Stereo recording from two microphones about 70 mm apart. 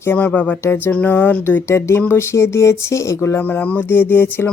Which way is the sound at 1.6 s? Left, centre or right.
Left.